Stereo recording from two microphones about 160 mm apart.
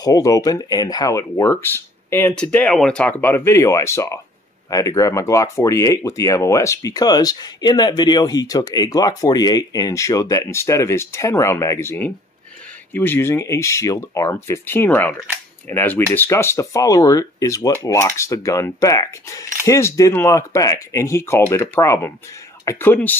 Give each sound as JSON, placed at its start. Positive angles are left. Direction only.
{"t": 0.0, "sound": "speech", "side_deg": 20}